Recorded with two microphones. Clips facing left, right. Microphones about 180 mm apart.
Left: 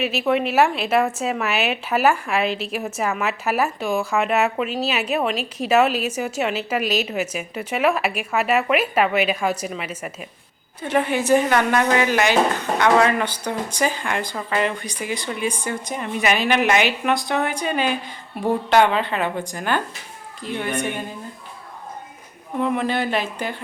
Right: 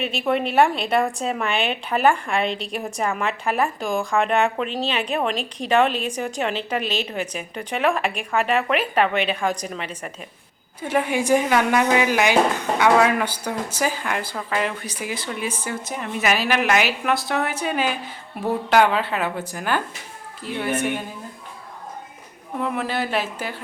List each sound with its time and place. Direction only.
0.0 s a woman's voice: 5° left (ahead or behind)
10.8 s a woman's voice: 10° right (ahead or behind)
22.6 s a woman's voice: 5° right (ahead or behind)